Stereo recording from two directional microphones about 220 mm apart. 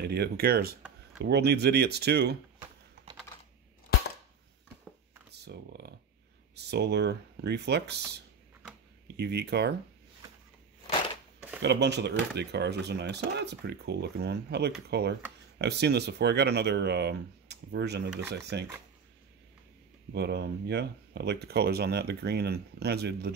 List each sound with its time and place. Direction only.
0.0 s speech: 45° right (ahead or behind)
5.3 s a sound: 50° right (ahead or behind)
6.5 s speech: 50° right (ahead or behind)
9.0 s speech: 50° right (ahead or behind)
11.6 s speech: 50° right (ahead or behind)
20.2 s speech: 50° right (ahead or behind)